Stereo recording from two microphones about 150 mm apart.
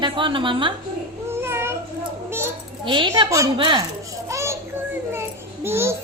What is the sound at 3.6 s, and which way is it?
Speech, 30° right (ahead or behind).